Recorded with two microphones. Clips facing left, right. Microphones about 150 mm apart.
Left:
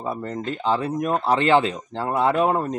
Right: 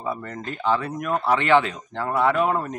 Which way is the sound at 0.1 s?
30° left (ahead or behind).